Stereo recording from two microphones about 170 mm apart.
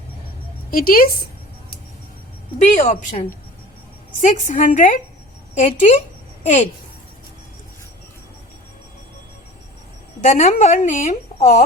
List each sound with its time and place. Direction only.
0.7 s a woman's voice: 60° left (ahead or behind)
2.6 s a woman's voice: 45° left (ahead or behind)
10.2 s a woman's voice: 45° left (ahead or behind)